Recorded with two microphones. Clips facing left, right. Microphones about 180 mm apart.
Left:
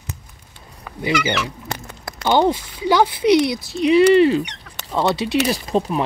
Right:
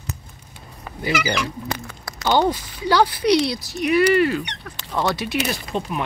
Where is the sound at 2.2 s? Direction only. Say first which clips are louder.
Left 2 dB; 20° left (ahead or behind).